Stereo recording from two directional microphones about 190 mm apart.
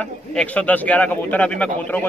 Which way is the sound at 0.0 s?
5° left (ahead or behind).